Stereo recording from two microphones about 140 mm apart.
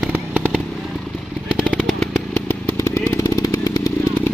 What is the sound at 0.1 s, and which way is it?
Fireworks, 10° right (ahead or behind).